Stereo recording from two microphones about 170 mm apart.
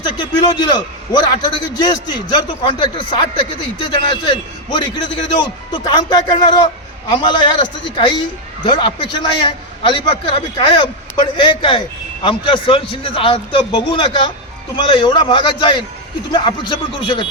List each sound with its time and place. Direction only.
0.0 s a man's voice: 25° left (ahead or behind)